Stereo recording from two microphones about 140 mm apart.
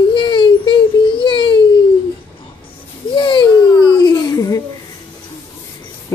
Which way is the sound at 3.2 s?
35° left (ahead or behind).